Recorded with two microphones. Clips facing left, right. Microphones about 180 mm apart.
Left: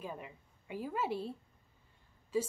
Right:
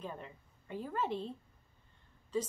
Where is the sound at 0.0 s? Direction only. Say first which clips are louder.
Even; 10° left (ahead or behind).